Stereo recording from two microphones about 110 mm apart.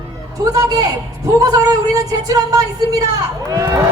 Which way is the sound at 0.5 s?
30° right (ahead or behind).